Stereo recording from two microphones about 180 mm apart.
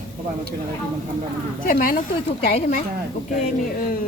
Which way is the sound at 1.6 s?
50° left (ahead or behind).